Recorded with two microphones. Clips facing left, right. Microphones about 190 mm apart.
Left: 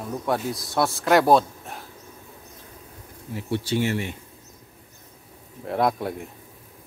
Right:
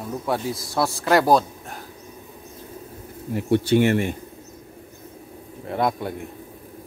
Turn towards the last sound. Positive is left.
turn(degrees=0)  # may be behind; listen again after turning